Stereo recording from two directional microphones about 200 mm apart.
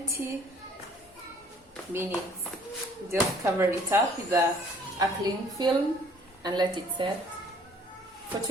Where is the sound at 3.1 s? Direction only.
15° right (ahead or behind).